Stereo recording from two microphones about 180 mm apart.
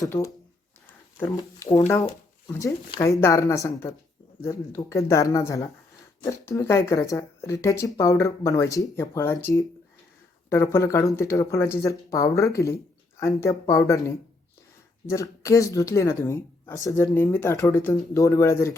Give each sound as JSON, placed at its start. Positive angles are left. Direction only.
{"t": 0.1, "sound": "speech", "side_deg": 20}
{"t": 1.9, "sound": "speech", "side_deg": 15}
{"t": 15.1, "sound": "speech", "side_deg": 15}
{"t": 17.1, "sound": "speech", "side_deg": 5}